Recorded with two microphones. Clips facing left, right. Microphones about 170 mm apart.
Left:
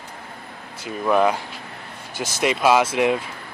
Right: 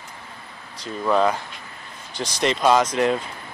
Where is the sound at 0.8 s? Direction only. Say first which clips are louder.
Left 1 dB; 10° left (ahead or behind).